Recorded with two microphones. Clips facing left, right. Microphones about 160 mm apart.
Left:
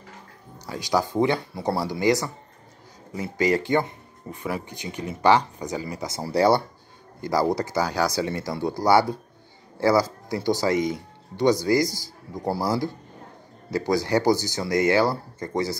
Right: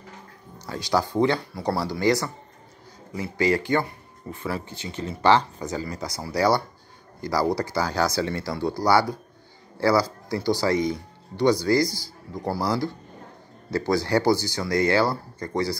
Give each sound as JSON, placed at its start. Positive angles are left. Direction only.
{"t": 0.7, "sound": "speech", "side_deg": 15}
{"t": 13.7, "sound": "speech", "side_deg": 15}